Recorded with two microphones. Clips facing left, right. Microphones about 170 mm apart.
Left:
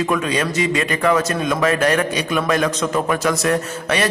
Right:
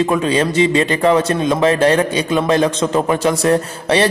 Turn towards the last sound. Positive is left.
turn(degrees=-30)  # may be behind; listen again after turning